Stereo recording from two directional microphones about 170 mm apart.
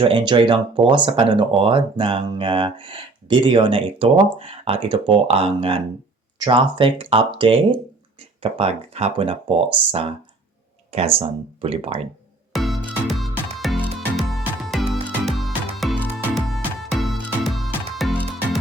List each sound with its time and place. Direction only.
0.0 s speech: 30° right (ahead or behind)
12.5 s music: centre (ahead or behind)